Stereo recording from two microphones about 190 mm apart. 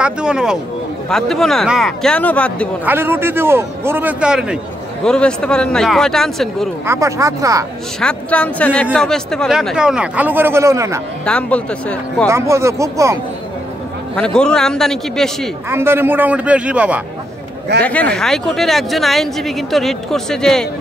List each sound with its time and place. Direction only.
0.0 s speech: 5° right (ahead or behind)
2.8 s a man's voice: 10° right (ahead or behind)
6.9 s a man's voice: 15° right (ahead or behind)
8.0 s speech: 5° left (ahead or behind); by 11.0 s 15° right (ahead or behind)
11.2 s speech: 5° left (ahead or behind)
12.3 s a man's voice: 15° right (ahead or behind)
14.1 s speech: 5° left (ahead or behind)
15.7 s a man's voice: 10° right (ahead or behind)
17.8 s speech: 5° left (ahead or behind)